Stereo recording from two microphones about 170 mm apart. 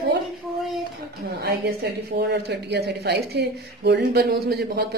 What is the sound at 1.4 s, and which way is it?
A man's voice, 65° right (ahead or behind).